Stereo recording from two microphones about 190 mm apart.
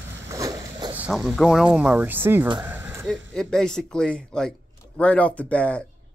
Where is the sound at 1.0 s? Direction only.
Centre (ahead or behind).